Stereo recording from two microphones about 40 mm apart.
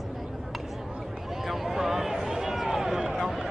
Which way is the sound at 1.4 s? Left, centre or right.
Centre.